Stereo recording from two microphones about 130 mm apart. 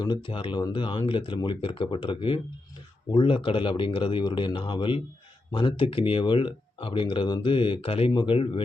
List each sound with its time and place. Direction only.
0.0 s speech: 35° left (ahead or behind)